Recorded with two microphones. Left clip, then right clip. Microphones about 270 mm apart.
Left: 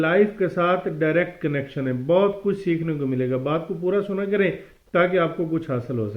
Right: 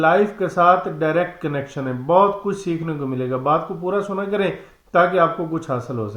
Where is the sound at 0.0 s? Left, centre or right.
Right.